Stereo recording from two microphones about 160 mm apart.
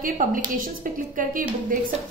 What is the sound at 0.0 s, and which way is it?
A woman's voice, 60° right (ahead or behind).